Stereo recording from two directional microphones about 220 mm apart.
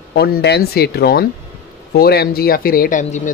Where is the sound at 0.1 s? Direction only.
50° left (ahead or behind).